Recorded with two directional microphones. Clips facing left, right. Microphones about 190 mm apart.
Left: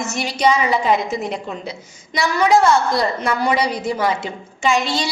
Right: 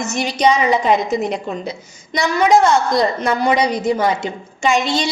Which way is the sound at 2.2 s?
20° right (ahead or behind).